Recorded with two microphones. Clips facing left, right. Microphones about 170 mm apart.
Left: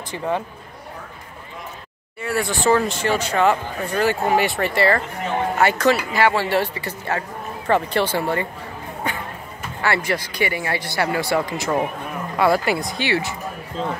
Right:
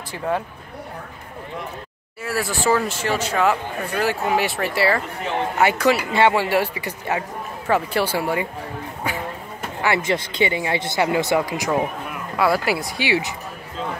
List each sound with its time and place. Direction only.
2.2 s speech: centre (ahead or behind)
6.1 s speech: 25° right (ahead or behind)
6.5 s speech: 10° right (ahead or behind)
9.8 s speech: 15° right (ahead or behind)